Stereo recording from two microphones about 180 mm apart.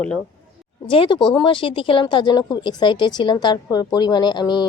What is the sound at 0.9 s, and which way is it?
Speech, 30° left (ahead or behind).